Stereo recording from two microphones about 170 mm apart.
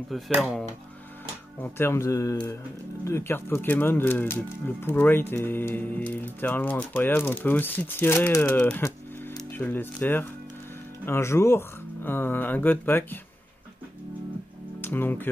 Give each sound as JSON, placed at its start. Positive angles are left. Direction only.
{"t": 0.1, "sound": "speech", "side_deg": 0}
{"t": 1.6, "sound": "speech", "side_deg": 15}
{"t": 14.8, "sound": "speech", "side_deg": 10}